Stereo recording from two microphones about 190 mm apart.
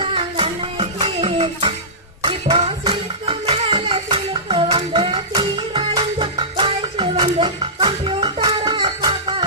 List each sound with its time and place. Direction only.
0.0 s music: 30° right (ahead or behind)